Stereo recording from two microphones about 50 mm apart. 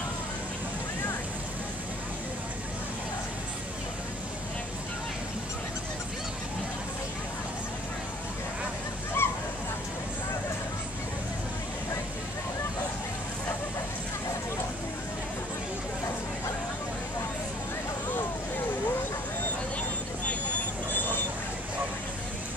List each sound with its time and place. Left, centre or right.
9.2 s honk: left
20.9 s vehicle: left